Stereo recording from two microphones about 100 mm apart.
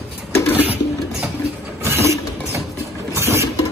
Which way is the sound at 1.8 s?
25° right (ahead or behind).